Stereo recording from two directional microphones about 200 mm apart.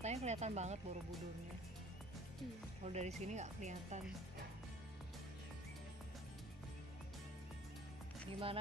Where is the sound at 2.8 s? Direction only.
35° right (ahead or behind).